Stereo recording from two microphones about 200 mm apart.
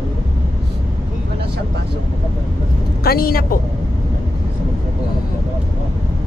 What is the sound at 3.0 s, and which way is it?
Speech, 50° left (ahead or behind).